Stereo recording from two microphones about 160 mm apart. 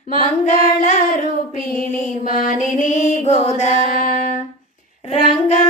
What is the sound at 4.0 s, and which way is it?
Child singing, 65° left (ahead or behind).